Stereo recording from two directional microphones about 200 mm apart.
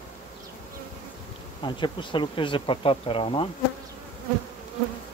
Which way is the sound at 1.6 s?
25° left (ahead or behind).